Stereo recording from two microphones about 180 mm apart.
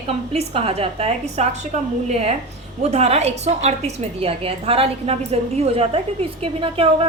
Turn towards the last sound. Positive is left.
turn(degrees=-30)  # may be behind; listen again after turning